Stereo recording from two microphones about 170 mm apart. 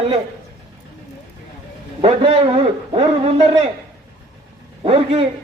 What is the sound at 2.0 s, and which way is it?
A man's voice, 35° right (ahead or behind).